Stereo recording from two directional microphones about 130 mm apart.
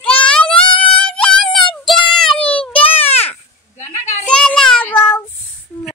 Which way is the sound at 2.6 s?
45° left (ahead or behind).